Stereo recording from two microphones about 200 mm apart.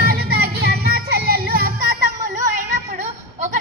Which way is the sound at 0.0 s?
50° right (ahead or behind).